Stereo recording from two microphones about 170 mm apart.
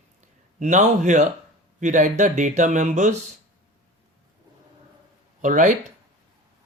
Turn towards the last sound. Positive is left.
turn(degrees=-45)  # may be behind; listen again after turning